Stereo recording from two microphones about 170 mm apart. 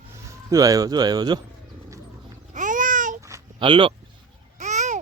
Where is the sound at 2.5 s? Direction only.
50° right (ahead or behind).